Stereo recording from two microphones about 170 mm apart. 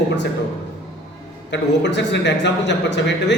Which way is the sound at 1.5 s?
90° left.